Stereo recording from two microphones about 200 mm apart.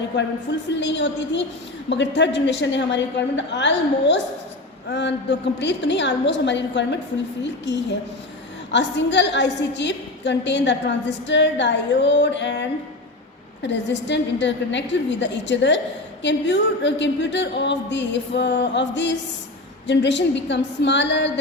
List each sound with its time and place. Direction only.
0.8 s a woman's voice: 65° left (ahead or behind)